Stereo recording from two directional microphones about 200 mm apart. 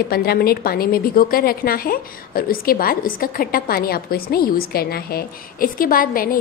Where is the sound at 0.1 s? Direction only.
50° left (ahead or behind).